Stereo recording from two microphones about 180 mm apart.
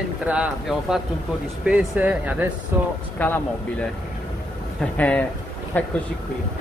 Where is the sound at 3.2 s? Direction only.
10° left (ahead or behind).